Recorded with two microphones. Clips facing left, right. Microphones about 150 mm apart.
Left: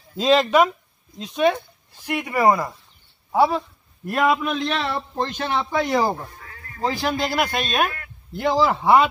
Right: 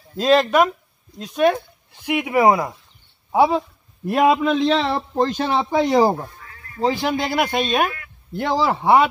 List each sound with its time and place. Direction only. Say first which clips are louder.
0.2 s a man's voice: right 1 dB; centre (ahead or behind); by 7.1 s 25° right (ahead or behind)
7.1 s speech: right 2 dB; 15° right (ahead or behind)